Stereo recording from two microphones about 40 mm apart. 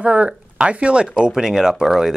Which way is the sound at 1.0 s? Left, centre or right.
Centre.